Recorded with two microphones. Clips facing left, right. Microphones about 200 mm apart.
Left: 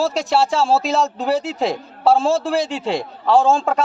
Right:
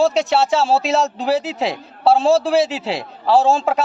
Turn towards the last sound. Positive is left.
turn(degrees=0)  # may be behind; listen again after turning